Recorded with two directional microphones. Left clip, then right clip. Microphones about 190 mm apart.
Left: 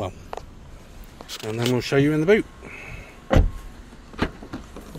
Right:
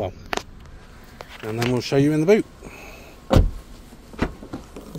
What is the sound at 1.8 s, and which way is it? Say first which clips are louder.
Speech: right 1 dB; 10° right (ahead or behind).